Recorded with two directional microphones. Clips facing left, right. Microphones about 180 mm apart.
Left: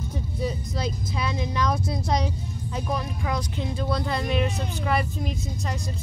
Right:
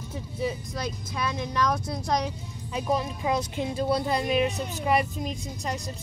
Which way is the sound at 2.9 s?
25° right (ahead or behind).